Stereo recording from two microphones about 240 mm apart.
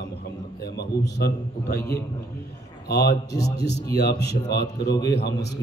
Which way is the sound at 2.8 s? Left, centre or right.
Left.